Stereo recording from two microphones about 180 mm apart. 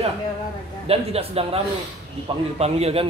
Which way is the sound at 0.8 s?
35° right (ahead or behind).